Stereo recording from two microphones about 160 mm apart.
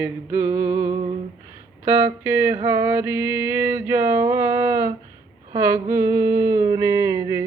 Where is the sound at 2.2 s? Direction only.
15° right (ahead or behind).